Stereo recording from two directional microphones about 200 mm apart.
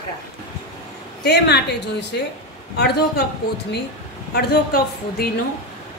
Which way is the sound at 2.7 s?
55° left (ahead or behind).